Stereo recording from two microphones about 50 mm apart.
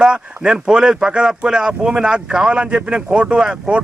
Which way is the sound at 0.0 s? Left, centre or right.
Centre.